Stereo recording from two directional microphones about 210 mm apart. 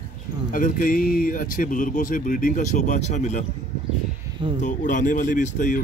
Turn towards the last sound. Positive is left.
turn(degrees=40)  # may be behind; listen again after turning